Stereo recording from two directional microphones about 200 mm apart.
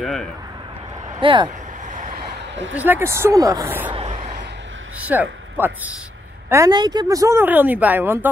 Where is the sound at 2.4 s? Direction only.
65° right (ahead or behind).